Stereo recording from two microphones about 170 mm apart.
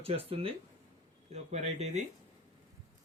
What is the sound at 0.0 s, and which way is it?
Speech, 35° right (ahead or behind).